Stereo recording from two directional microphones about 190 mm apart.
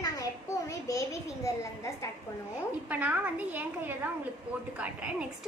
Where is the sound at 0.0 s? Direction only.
20° left (ahead or behind).